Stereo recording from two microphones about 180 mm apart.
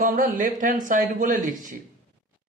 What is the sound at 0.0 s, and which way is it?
Speech, 50° right (ahead or behind).